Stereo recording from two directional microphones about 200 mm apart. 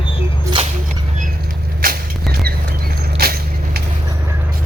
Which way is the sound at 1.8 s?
45° right (ahead or behind).